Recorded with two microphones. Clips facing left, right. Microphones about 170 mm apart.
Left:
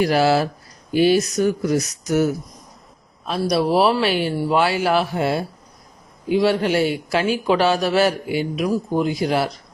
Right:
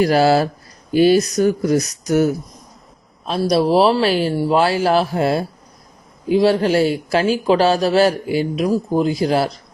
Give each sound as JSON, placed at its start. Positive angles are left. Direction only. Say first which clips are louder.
{"t": 0.0, "sound": "speech", "louder": "right 3 dB", "side_deg": -40}